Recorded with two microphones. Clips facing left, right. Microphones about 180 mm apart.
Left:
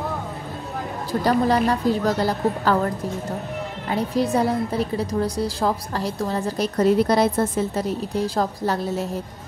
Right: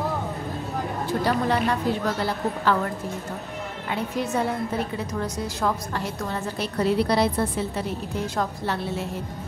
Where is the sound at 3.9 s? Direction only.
35° left (ahead or behind).